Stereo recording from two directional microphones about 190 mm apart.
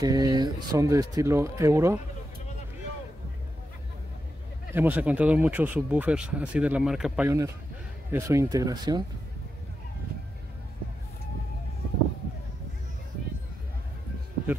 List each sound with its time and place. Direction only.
0.0 s speech: 20° right (ahead or behind)
4.7 s speech: 10° right (ahead or behind)
7.2 s speech: 15° right (ahead or behind)